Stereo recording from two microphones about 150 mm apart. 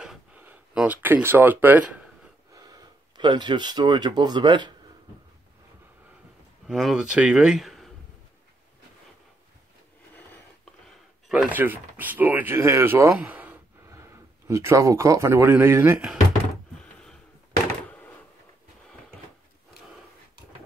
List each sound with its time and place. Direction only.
0.4 s speech: 10° right (ahead or behind)
2.5 s speech: 25° right (ahead or behind)
6.7 s speech: 5° right (ahead or behind)
10.1 s a sound: 10° left (ahead or behind)
11.2 s speech: 5° right (ahead or behind)